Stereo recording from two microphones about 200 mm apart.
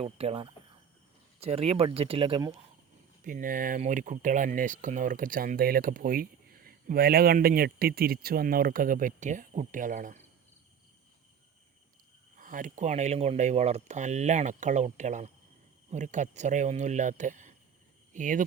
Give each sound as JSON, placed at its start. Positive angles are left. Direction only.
{"t": 0.0, "sound": "speech", "side_deg": -30}
{"t": 3.2, "sound": "speech", "side_deg": -40}
{"t": 12.4, "sound": "speech", "side_deg": -40}